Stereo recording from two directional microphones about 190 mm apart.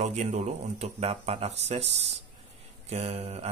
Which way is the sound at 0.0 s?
35° right (ahead or behind).